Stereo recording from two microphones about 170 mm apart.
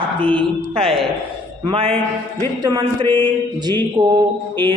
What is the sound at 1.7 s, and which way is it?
Speech, 30° right (ahead or behind).